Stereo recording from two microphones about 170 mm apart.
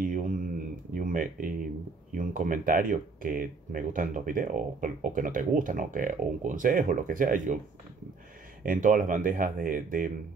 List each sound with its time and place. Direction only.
0.0 s mantra: 50° right (ahead or behind)
0.9 s a sound: 55° right (ahead or behind)
2.1 s speech: 50° right (ahead or behind)
8.6 s speech: 50° right (ahead or behind)